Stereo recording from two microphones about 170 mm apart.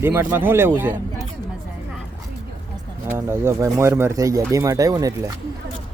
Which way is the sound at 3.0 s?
15° right (ahead or behind).